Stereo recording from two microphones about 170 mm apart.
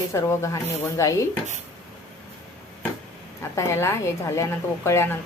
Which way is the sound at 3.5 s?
15° left (ahead or behind).